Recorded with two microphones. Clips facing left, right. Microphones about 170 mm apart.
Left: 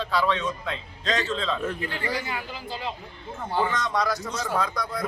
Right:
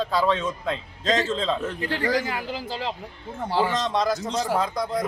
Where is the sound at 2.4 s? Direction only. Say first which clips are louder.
Right 4 dB; 90° right.